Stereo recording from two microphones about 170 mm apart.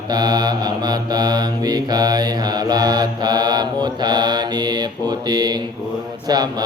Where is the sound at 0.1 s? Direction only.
25° right (ahead or behind).